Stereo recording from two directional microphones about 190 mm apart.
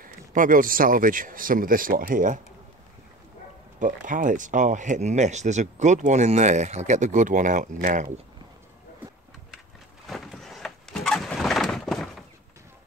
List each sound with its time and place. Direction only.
0.0 s speech: 45° right (ahead or behind)
3.8 s speech: 45° right (ahead or behind)
10.0 s a sound: centre (ahead or behind)